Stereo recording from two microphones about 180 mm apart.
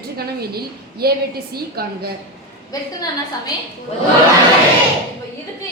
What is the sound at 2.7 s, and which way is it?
Speech, 20° left (ahead or behind).